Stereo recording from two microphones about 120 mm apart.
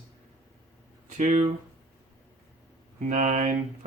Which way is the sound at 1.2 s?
70° right (ahead or behind).